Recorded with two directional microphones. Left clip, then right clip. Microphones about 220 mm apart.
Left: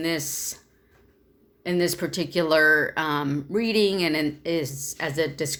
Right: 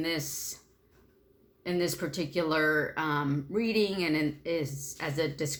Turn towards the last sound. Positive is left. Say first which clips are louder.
# left 6 dB
turn(degrees=35)  # may be behind; listen again after turning